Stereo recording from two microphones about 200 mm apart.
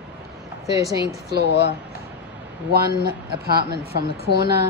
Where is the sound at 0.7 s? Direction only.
15° right (ahead or behind).